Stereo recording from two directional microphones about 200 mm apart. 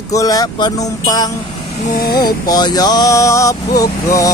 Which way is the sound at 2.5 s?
20° left (ahead or behind).